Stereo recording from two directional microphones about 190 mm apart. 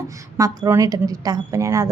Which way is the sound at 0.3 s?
15° right (ahead or behind).